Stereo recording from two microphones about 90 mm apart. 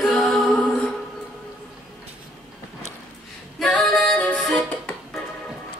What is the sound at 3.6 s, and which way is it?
Music, 5° left (ahead or behind).